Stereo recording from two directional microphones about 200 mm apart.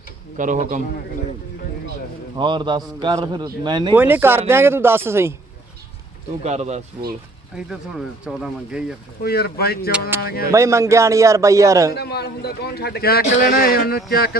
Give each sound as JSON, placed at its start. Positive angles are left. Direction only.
{"t": 0.3, "sound": "speech", "side_deg": -40}
{"t": 2.3, "sound": "a man's voice", "side_deg": -20}
{"t": 3.9, "sound": "a man's voice", "side_deg": -10}
{"t": 6.4, "sound": "speech", "side_deg": -35}
{"t": 7.5, "sound": "speech", "side_deg": 0}
{"t": 9.2, "sound": "a man's voice", "side_deg": 50}
{"t": 10.5, "sound": "a man's voice", "side_deg": -15}
{"t": 11.9, "sound": "a man's voice", "side_deg": 55}